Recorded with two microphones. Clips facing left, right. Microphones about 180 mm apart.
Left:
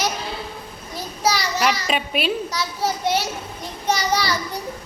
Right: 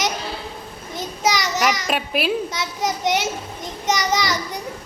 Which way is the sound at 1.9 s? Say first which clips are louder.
Right 1 dB; 5° right (ahead or behind).